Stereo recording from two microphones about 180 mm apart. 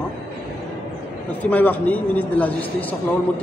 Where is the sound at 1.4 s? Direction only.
10° left (ahead or behind).